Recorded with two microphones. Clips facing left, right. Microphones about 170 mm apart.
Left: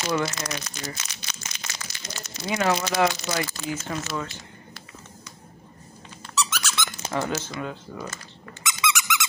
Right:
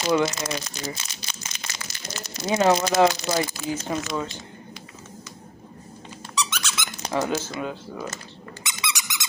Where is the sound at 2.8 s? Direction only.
45° right (ahead or behind).